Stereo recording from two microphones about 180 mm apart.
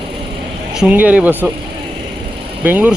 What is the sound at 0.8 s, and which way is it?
Speech, 10° right (ahead or behind).